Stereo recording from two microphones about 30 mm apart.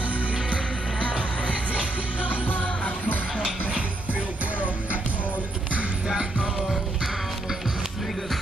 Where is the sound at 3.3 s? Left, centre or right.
Right.